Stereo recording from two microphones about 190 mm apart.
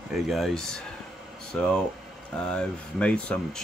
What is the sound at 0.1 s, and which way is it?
Speech, centre (ahead or behind).